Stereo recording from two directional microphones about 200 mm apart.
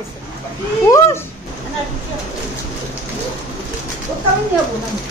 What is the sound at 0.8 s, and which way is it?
Speech, 15° left (ahead or behind).